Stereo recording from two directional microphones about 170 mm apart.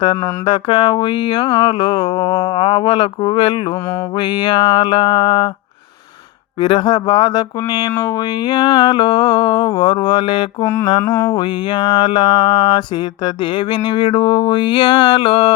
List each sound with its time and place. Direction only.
0.4 s mantra: 30° left (ahead or behind)
6.6 s mantra: 25° left (ahead or behind)
10.6 s mantra: 15° left (ahead or behind); by 15.5 s 30° left (ahead or behind)